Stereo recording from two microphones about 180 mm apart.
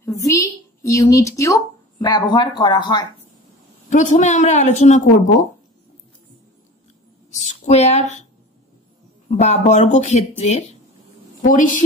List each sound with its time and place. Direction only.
0.0 s a woman's voice: 15° left (ahead or behind)
3.9 s speech: 40° left (ahead or behind)
7.2 s a woman's voice: 40° left (ahead or behind)
9.3 s a woman's voice: 40° left (ahead or behind)